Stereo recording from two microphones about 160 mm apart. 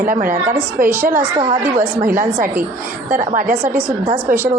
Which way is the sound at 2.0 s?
60° right (ahead or behind).